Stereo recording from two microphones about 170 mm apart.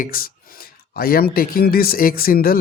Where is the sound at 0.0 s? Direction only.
60° left (ahead or behind).